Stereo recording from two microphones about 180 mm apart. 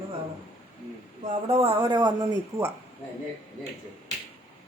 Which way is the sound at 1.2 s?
40° right (ahead or behind).